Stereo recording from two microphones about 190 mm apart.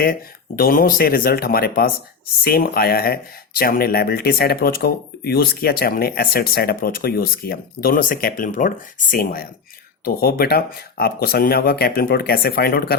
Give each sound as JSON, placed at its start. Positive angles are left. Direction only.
{"t": 0.0, "sound": "speech", "side_deg": 50}